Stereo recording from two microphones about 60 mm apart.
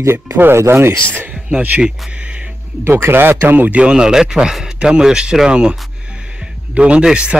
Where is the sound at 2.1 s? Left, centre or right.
Centre.